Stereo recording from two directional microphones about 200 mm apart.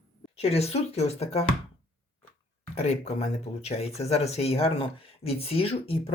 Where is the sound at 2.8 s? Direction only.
35° left (ahead or behind).